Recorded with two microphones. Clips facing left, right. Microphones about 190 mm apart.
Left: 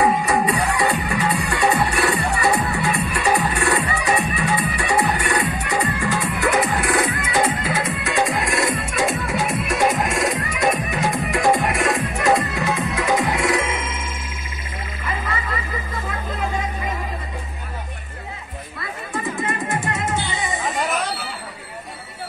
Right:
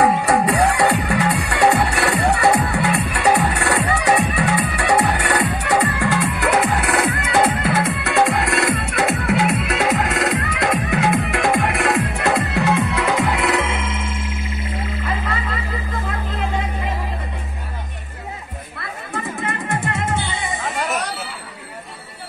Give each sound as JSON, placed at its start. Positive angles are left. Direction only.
{"t": 0.0, "sound": "music", "side_deg": -70}
{"t": 19.4, "sound": "music", "side_deg": -60}